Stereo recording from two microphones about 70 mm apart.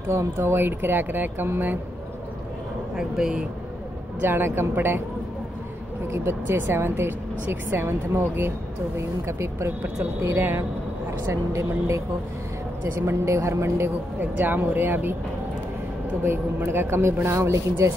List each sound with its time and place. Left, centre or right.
0.1 s speech: right
3.0 s speech: centre
4.2 s speech: right
6.1 s speech: right
11.2 s speech: right
14.2 s speech: right
16.3 s speech: right